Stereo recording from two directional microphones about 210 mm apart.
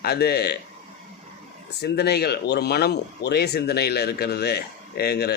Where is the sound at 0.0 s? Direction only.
50° left (ahead or behind).